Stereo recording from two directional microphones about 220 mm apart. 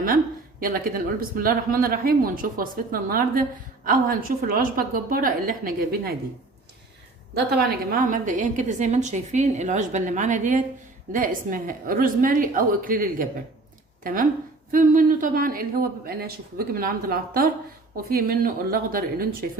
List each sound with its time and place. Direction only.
0.6 s a woman's voice: 40° right (ahead or behind)
7.3 s a woman's voice: 45° right (ahead or behind)